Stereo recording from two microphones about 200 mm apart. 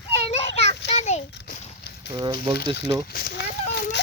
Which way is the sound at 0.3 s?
30° left (ahead or behind).